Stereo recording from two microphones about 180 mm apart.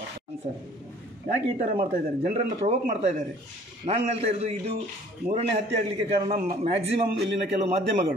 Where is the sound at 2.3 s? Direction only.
40° right (ahead or behind).